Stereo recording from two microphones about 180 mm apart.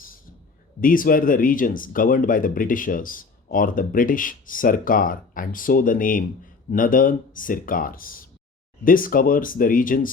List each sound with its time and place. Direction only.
0.8 s speech: 50° left (ahead or behind)